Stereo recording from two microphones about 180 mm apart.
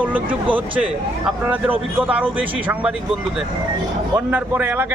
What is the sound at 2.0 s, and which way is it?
Speech, 10° right (ahead or behind).